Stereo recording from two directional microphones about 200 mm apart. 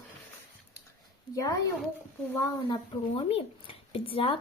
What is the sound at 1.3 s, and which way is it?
Speech, 15° left (ahead or behind).